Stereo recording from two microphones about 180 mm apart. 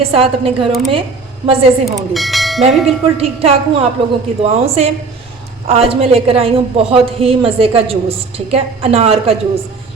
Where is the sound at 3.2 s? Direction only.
35° right (ahead or behind).